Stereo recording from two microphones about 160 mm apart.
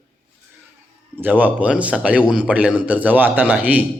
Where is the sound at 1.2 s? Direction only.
10° right (ahead or behind).